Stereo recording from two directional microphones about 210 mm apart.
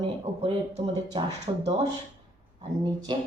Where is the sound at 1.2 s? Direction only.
20° right (ahead or behind).